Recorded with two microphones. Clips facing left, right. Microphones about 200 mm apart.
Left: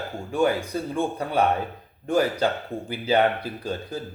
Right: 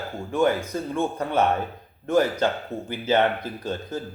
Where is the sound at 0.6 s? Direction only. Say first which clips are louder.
Even; 35° left (ahead or behind).